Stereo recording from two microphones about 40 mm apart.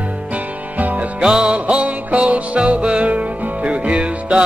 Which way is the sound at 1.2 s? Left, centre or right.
Right.